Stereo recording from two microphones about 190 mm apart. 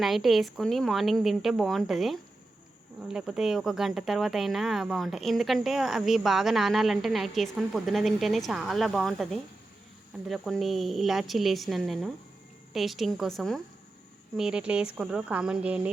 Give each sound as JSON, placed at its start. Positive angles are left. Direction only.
{"t": 0.0, "sound": "speech", "side_deg": 0}